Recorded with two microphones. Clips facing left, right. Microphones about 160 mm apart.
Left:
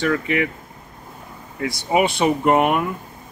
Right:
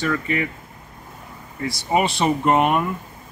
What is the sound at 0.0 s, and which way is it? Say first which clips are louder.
Speech: left 3 dB; 75° left (ahead or behind).